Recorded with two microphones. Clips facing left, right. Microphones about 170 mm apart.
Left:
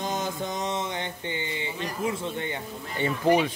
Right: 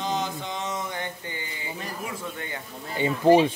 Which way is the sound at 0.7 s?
25° left (ahead or behind).